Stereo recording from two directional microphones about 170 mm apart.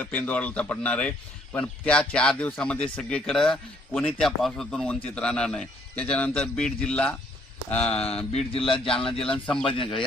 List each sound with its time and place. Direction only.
0.0 s a man's voice: 10° left (ahead or behind)
7.7 s speech: 35° left (ahead or behind)
9.5 s speech: 5° left (ahead or behind)
9.7 s speech: 30° left (ahead or behind)